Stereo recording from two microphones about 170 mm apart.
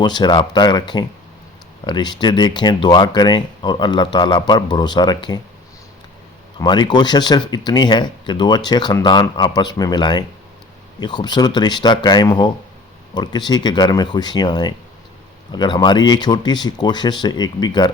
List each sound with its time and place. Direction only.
0.0 s speech: 25° left (ahead or behind)
6.6 s speech: 25° left (ahead or behind)